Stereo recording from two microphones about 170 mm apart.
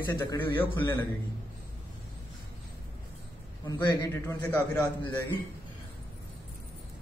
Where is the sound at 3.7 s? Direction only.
15° left (ahead or behind).